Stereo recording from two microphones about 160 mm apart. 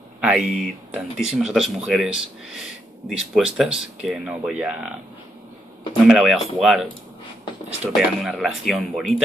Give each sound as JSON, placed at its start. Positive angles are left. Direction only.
{"t": 0.2, "sound": "speech", "side_deg": -5}
{"t": 6.0, "sound": "speech", "side_deg": -5}
{"t": 7.9, "sound": "speech", "side_deg": 0}